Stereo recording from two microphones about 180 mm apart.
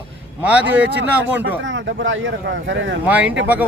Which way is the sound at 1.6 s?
90° right.